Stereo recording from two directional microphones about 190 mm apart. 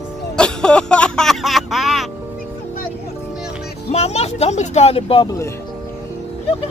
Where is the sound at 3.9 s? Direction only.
35° left (ahead or behind).